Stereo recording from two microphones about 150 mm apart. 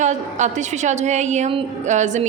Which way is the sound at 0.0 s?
50° right (ahead or behind).